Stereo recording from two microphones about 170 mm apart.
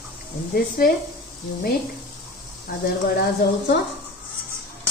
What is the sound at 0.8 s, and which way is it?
Speech, 60° left (ahead or behind).